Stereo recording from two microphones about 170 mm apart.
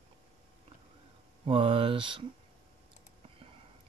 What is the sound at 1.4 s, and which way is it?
Speech, 30° right (ahead or behind).